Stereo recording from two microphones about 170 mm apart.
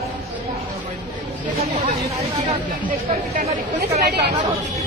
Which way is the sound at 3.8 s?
70° right (ahead or behind).